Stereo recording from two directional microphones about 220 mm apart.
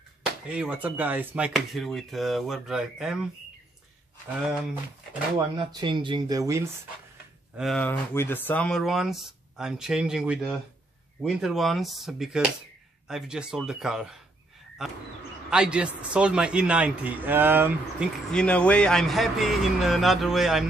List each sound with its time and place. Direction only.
0.5 s speech: 5° right (ahead or behind)
4.4 s speech: 5° right (ahead or behind)
5.6 s speech: 20° right (ahead or behind)
7.5 s speech: centre (ahead or behind)
15.5 s speech: 5° right (ahead or behind)
18.3 s speech: 5° left (ahead or behind)